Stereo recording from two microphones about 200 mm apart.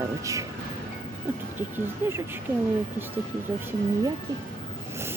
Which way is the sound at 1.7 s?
10° right (ahead or behind).